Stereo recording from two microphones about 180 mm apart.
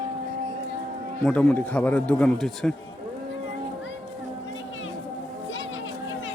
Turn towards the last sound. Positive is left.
turn(degrees=90)